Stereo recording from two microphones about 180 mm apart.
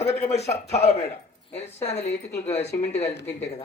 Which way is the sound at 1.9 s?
15° left (ahead or behind).